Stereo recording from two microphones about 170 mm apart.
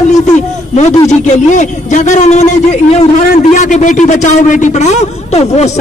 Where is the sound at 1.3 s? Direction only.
45° left (ahead or behind).